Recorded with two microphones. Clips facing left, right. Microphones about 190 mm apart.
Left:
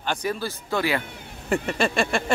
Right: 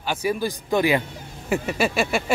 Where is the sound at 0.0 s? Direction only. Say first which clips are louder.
Right 3 dB; 10° right (ahead or behind).